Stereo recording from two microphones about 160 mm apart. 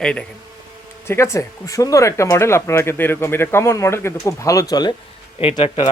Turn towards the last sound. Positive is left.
turn(degrees=35)  # may be behind; listen again after turning